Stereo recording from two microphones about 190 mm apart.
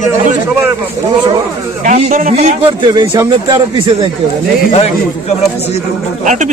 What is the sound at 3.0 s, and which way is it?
Speech, 20° right (ahead or behind).